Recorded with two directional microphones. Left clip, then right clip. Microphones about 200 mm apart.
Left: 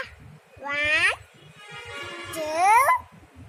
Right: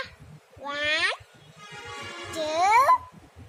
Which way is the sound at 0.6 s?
5° right (ahead or behind).